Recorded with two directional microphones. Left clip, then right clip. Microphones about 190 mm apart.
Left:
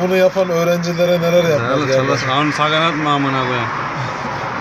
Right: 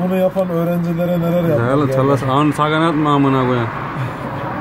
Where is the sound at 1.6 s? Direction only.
25° right (ahead or behind).